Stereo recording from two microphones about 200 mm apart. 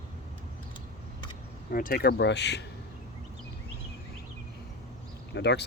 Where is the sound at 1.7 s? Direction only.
45° left (ahead or behind).